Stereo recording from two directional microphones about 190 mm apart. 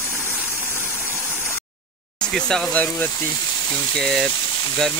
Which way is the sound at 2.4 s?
5° left (ahead or behind).